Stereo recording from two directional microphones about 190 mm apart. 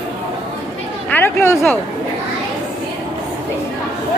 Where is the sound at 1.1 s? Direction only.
10° left (ahead or behind).